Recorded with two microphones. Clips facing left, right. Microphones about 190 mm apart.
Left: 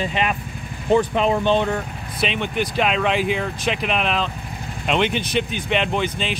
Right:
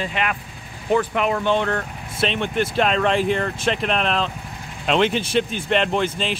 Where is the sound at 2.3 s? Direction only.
Centre (ahead or behind).